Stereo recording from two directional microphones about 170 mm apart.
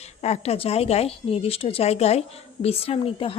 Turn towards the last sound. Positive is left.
turn(degrees=35)  # may be behind; listen again after turning